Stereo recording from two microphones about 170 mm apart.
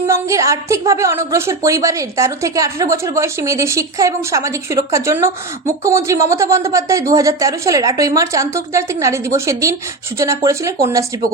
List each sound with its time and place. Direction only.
0.1 s a woman's voice: 20° right (ahead or behind)